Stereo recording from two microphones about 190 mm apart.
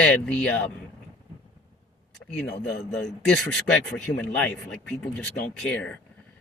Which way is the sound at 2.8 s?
5° left (ahead or behind).